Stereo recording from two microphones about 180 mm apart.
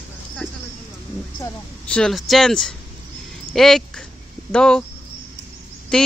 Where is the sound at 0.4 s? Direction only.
5° left (ahead or behind).